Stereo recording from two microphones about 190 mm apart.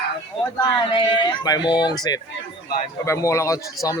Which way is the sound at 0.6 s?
25° left (ahead or behind).